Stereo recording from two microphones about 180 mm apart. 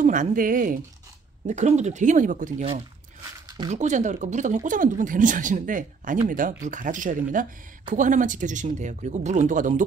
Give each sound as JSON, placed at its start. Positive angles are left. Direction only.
{"t": 0.0, "sound": "speech", "side_deg": -45}
{"t": 3.6, "sound": "speech", "side_deg": -40}